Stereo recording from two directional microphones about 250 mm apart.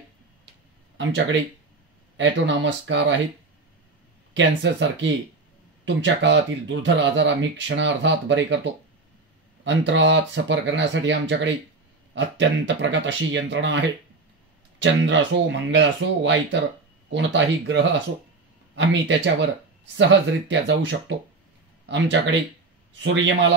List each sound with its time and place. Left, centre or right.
0.9 s speech: right
4.3 s speech: right
9.7 s speech: right